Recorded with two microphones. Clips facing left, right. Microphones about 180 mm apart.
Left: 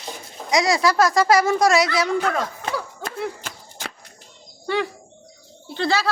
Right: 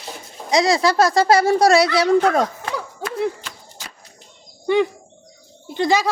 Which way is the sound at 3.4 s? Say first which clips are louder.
Left 3 dB; 60° left (ahead or behind).